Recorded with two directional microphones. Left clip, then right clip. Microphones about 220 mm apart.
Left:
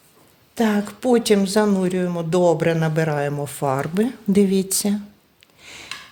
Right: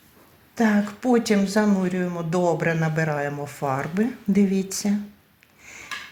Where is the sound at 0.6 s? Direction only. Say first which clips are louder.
Left 1 dB; 70° left (ahead or behind).